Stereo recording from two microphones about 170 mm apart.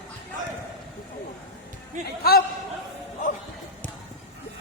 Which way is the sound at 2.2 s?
65° left (ahead or behind).